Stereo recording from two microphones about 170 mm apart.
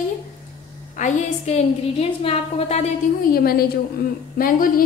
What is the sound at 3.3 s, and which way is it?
Speech, 65° left (ahead or behind).